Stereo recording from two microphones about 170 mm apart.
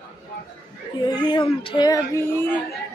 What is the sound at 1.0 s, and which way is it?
Speech, 25° left (ahead or behind).